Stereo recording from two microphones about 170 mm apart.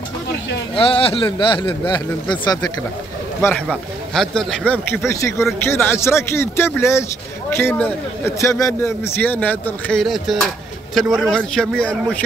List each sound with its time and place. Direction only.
0.7 s speech: 35° left (ahead or behind); by 3.6 s 15° left (ahead or behind)
3.6 s a man's voice: centre (ahead or behind)